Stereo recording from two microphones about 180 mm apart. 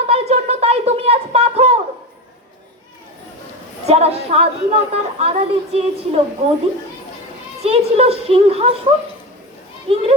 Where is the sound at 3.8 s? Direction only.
35° right (ahead or behind).